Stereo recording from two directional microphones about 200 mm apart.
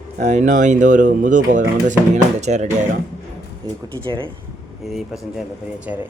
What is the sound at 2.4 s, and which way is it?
Speech, 35° right (ahead or behind).